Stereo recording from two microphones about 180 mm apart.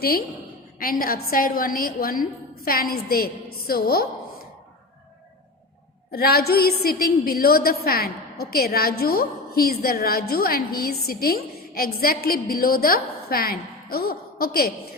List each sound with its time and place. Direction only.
0.0 s a woman's voice: 55° left (ahead or behind)
6.1 s a woman's voice: 60° left (ahead or behind)